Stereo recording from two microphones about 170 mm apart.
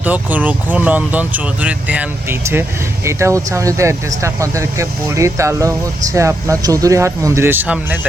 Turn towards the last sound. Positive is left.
turn(degrees=-10)  # may be behind; listen again after turning